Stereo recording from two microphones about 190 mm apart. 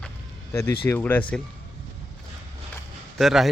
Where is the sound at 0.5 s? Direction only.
15° left (ahead or behind).